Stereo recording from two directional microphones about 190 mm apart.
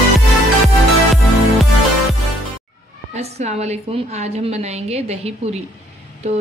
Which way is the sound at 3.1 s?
35° right (ahead or behind).